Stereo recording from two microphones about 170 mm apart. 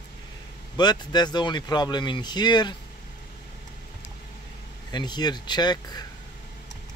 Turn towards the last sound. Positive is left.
turn(degrees=25)  # may be behind; listen again after turning